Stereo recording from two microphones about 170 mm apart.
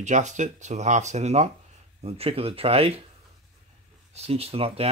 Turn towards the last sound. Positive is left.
turn(degrees=-35)  # may be behind; listen again after turning